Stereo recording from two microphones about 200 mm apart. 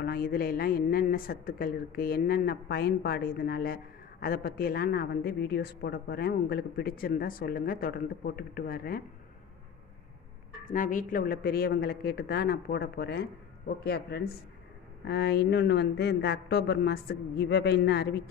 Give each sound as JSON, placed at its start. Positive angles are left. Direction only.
{"t": 0.0, "sound": "a woman's voice", "side_deg": 50}
{"t": 10.6, "sound": "a woman's voice", "side_deg": 40}